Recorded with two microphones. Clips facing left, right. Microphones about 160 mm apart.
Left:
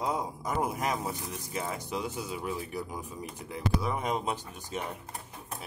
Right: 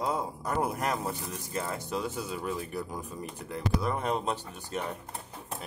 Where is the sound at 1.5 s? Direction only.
10° left (ahead or behind).